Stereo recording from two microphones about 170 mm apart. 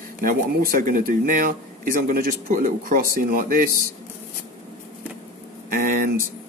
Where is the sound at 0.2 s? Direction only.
55° right (ahead or behind).